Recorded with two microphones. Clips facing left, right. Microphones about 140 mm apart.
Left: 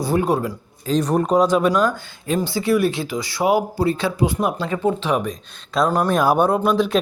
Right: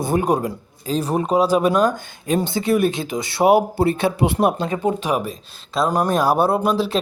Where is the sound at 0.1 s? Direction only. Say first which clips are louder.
Even; 20° right (ahead or behind).